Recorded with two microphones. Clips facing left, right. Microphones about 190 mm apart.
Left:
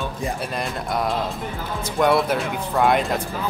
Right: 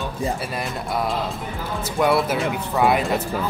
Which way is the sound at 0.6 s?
Centre (ahead or behind).